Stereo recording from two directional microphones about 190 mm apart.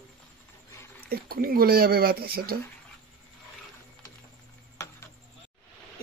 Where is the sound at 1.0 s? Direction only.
55° right (ahead or behind).